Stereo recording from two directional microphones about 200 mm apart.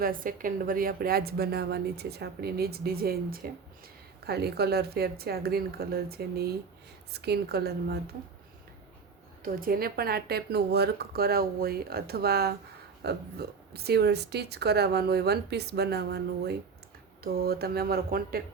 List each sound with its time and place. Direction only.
0.0 s a woman's voice: 45° right (ahead or behind)
9.4 s a woman's voice: 45° right (ahead or behind)